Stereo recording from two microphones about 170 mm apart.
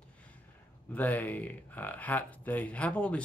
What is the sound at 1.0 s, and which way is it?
Speech, 10° left (ahead or behind).